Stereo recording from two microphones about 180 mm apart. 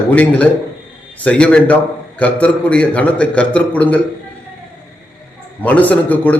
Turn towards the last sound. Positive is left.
turn(degrees=10)  # may be behind; listen again after turning